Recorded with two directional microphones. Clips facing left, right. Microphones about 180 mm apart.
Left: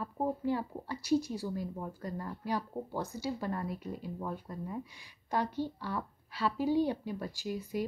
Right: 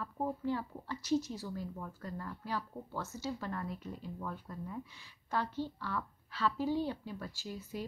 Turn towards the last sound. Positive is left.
turn(degrees=15)  # may be behind; listen again after turning